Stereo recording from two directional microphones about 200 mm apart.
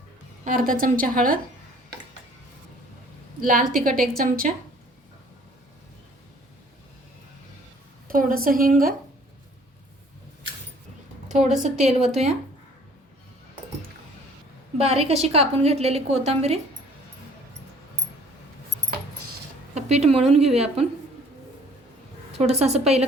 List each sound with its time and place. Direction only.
0.4 s a woman's voice: 45° right (ahead or behind)
3.4 s a woman's voice: 45° right (ahead or behind)
8.0 s a woman's voice: 45° right (ahead or behind)
11.8 s a woman's voice: 30° right (ahead or behind)
14.8 s a woman's voice: 30° right (ahead or behind)
19.7 s a woman's voice: 35° right (ahead or behind)
22.3 s a woman's voice: 30° right (ahead or behind)